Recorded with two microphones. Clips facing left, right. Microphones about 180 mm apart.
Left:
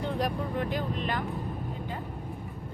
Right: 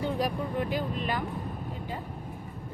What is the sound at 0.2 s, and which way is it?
Speech, 5° right (ahead or behind).